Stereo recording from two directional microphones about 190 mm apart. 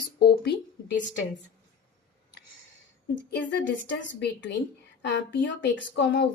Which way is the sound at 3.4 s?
75° left (ahead or behind).